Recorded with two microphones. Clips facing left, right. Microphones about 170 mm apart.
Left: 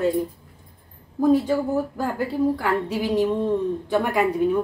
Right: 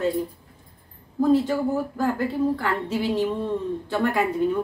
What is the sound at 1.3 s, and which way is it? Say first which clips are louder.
A woman's voice: left 1 dB; 15° left (ahead or behind).